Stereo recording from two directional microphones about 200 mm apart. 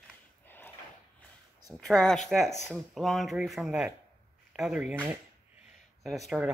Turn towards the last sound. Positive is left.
turn(degrees=0)  # may be behind; listen again after turning